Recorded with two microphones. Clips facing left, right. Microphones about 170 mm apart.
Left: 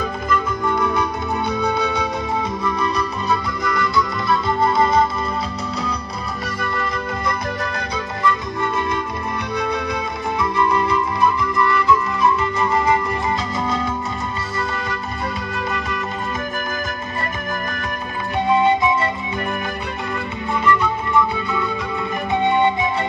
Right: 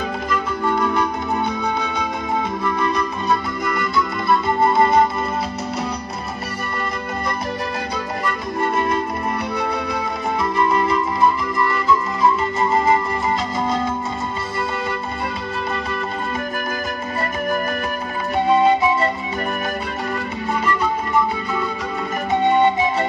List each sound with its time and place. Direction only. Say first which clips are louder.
10.7 s flute: even; 25° right (ahead or behind)
20.6 s music: left 4 dB; 40° right (ahead or behind)